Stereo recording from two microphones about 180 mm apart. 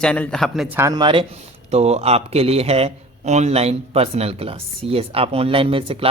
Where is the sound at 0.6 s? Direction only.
15° right (ahead or behind).